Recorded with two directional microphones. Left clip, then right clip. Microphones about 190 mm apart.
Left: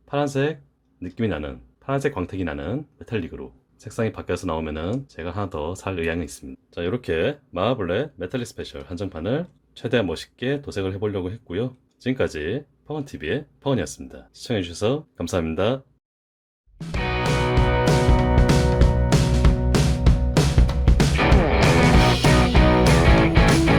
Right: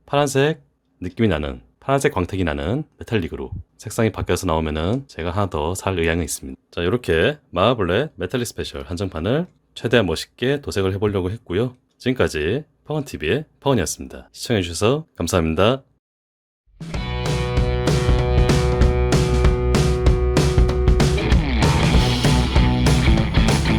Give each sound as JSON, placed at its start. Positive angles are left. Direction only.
{"t": 0.1, "sound": "speech", "side_deg": -40}
{"t": 16.7, "sound": "music", "side_deg": 0}